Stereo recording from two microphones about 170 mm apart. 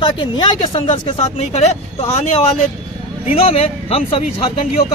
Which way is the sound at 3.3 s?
35° left (ahead or behind).